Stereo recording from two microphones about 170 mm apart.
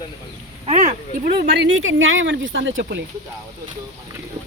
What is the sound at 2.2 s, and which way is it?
Speech, 90° right.